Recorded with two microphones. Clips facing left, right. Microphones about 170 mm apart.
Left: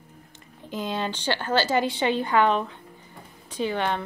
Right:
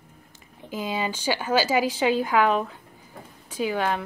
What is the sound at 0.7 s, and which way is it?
A woman's voice, 5° right (ahead or behind).